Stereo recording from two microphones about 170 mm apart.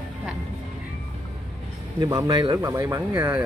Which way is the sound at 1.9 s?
20° right (ahead or behind).